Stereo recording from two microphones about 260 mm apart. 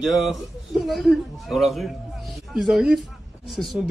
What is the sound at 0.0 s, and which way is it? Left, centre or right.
A man's voice, centre.